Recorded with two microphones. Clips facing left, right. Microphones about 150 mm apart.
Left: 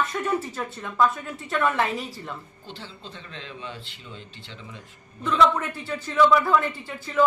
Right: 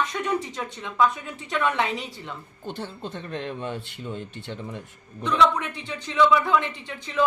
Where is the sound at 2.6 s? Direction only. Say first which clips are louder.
Right 7 dB; 55° right (ahead or behind).